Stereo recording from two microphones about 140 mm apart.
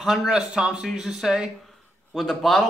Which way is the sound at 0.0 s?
Centre (ahead or behind).